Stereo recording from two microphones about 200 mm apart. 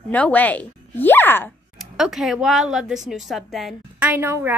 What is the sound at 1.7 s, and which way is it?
A woman's voice, centre (ahead or behind).